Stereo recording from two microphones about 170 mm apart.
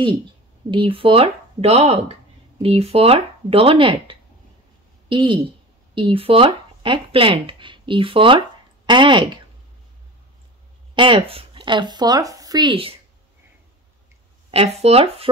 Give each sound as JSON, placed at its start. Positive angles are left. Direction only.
{"t": 0.7, "sound": "speech", "side_deg": -30}
{"t": 11.0, "sound": "speech", "side_deg": -30}
{"t": 14.5, "sound": "speech", "side_deg": -35}